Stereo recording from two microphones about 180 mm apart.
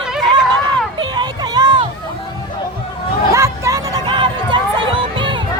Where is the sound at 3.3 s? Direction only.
15° right (ahead or behind).